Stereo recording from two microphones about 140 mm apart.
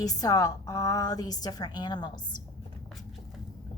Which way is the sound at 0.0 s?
25° left (ahead or behind).